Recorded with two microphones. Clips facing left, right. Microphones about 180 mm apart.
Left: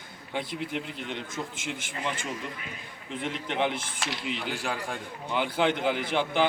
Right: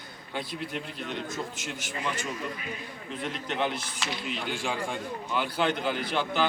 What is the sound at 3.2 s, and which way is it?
Speech, 15° left (ahead or behind).